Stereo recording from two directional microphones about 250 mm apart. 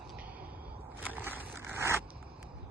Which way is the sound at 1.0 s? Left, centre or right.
Centre.